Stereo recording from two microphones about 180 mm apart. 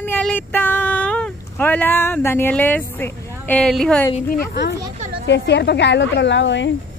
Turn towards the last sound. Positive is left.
turn(degrees=90)